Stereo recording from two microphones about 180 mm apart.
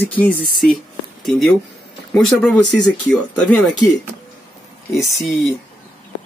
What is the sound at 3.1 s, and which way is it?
Speech, 5° left (ahead or behind).